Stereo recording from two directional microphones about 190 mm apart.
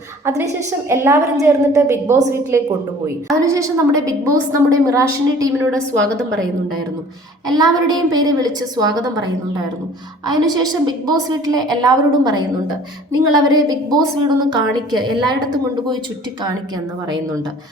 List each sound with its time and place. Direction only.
0.9 s a woman's voice: 15° right (ahead or behind)
7.4 s a woman's voice: 20° right (ahead or behind)